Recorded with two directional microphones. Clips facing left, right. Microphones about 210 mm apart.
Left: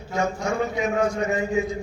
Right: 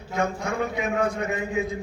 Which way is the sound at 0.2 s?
55° right (ahead or behind).